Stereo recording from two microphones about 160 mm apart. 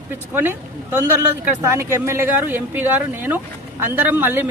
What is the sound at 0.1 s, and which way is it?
Speech, 10° right (ahead or behind).